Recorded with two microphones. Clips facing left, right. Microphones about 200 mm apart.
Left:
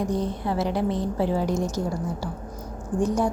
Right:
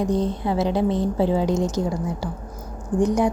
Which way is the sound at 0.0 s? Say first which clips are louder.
Right 4 dB; 20° right (ahead or behind).